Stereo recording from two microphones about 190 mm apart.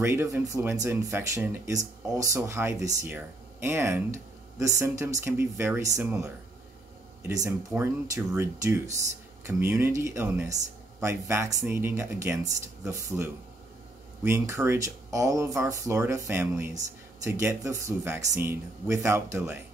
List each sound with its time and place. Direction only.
0.0 s speech: 15° right (ahead or behind)